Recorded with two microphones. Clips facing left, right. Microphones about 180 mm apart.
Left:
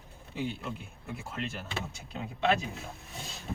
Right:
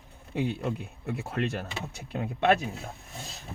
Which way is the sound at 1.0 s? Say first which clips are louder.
Right 7 dB; 65° right (ahead or behind).